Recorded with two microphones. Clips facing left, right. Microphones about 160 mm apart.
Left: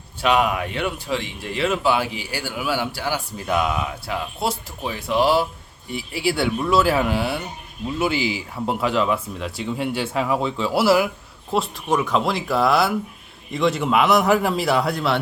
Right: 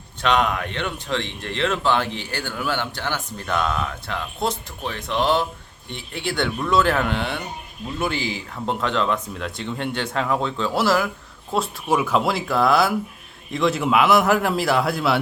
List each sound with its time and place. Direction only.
0.2 s a man's voice: 10° left (ahead or behind)
11.5 s a man's voice: 5° right (ahead or behind)